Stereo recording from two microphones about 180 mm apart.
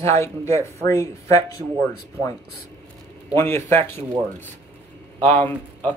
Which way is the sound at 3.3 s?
15° left (ahead or behind).